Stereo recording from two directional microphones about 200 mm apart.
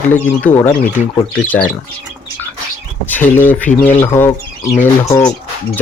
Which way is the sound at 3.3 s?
10° left (ahead or behind).